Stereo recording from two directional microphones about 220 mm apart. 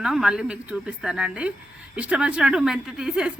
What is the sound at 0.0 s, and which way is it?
Speech, centre (ahead or behind).